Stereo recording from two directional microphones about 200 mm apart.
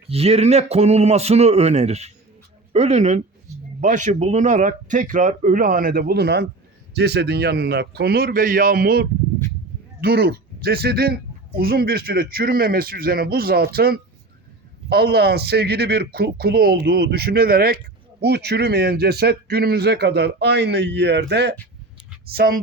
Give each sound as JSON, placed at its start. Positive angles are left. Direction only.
{"t": 0.1, "sound": "a man's voice", "side_deg": -30}